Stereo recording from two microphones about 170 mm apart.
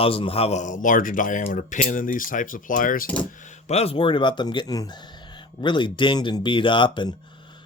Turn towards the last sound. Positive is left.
turn(degrees=30)  # may be behind; listen again after turning